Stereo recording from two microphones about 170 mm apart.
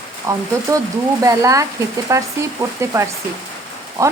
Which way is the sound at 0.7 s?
20° right (ahead or behind).